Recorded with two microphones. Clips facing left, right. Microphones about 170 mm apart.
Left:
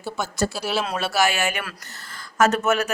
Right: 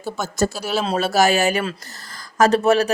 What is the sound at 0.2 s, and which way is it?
Speech, 45° right (ahead or behind).